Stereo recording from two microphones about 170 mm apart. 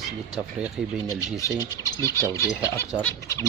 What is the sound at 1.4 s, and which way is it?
Speech, 20° left (ahead or behind).